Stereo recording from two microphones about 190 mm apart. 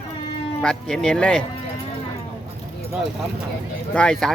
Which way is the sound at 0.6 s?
5° left (ahead or behind).